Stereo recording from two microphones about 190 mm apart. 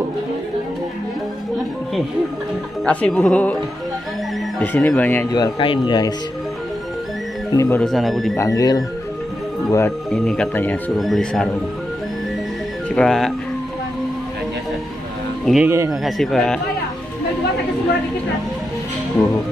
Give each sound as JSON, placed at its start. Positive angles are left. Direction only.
{"t": 2.8, "sound": "speech", "side_deg": 5}
{"t": 5.3, "sound": "speech", "side_deg": 25}
{"t": 7.5, "sound": "speech", "side_deg": 15}
{"t": 7.8, "sound": "speech", "side_deg": 0}
{"t": 8.4, "sound": "speech", "side_deg": 15}
{"t": 10.1, "sound": "speech", "side_deg": 5}
{"t": 12.9, "sound": "speech", "side_deg": 0}
{"t": 15.4, "sound": "speech", "side_deg": 0}